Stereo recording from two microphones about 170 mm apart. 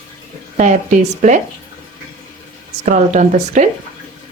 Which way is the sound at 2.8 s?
45° right (ahead or behind).